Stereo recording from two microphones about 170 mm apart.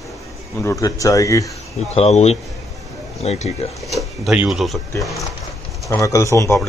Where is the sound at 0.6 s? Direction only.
20° left (ahead or behind).